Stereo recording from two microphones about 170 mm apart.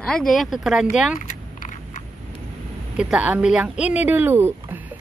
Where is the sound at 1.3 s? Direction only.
45° left (ahead or behind).